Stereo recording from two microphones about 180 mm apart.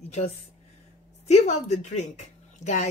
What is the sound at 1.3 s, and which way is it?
Speech, 40° left (ahead or behind).